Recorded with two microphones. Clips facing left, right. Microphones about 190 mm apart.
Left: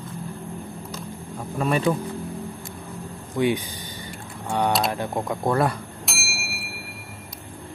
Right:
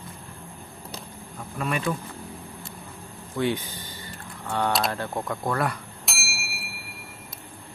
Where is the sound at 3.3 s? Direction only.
15° left (ahead or behind).